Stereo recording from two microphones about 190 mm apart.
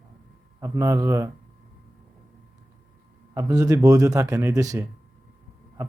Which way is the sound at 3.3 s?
20° right (ahead or behind).